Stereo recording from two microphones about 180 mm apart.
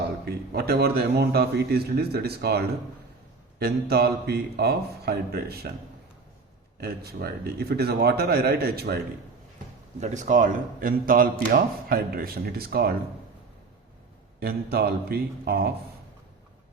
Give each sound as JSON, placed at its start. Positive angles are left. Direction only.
{"t": 0.3, "sound": "a man's voice", "side_deg": -60}
{"t": 6.7, "sound": "a man's voice", "side_deg": -60}
{"t": 10.0, "sound": "speech", "side_deg": -45}
{"t": 14.3, "sound": "a man's voice", "side_deg": -60}